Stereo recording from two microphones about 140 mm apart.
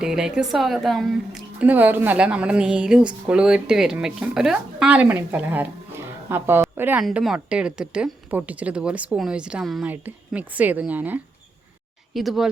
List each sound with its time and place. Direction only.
0.0 s a woman's voice: 5° right (ahead or behind)
7.0 s a woman's voice: 5° right (ahead or behind)
12.1 s speech: centre (ahead or behind)